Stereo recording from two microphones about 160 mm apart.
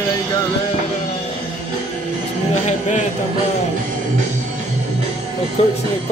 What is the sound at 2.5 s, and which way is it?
Speech, 45° left (ahead or behind).